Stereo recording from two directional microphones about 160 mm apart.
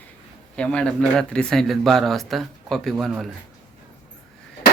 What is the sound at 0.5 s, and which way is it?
Speech, 5° left (ahead or behind).